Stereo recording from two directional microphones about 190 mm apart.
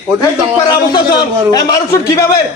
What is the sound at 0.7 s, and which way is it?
A man's voice, 25° left (ahead or behind).